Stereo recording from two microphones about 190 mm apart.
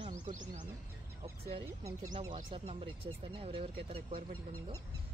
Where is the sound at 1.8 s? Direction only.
15° right (ahead or behind).